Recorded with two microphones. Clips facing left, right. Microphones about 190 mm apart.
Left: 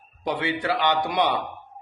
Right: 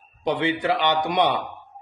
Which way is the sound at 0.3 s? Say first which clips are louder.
Right 3 dB; 20° right (ahead or behind).